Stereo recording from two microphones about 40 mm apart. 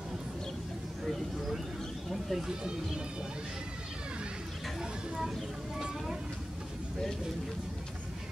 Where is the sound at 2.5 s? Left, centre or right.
Centre.